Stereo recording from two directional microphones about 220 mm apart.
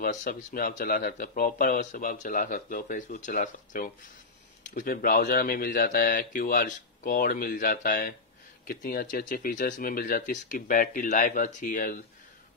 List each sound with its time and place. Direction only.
0.0 s speech: 40° left (ahead or behind)